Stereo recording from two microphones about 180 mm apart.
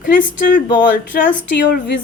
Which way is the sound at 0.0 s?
50° left (ahead or behind).